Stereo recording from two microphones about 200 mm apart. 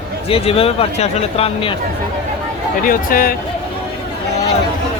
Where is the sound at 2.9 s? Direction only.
45° left (ahead or behind).